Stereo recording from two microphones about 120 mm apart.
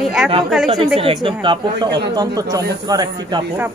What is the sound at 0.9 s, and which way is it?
Speech, 50° right (ahead or behind).